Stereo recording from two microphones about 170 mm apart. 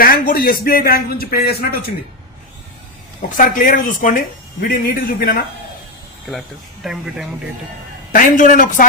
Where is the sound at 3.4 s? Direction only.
55° left (ahead or behind).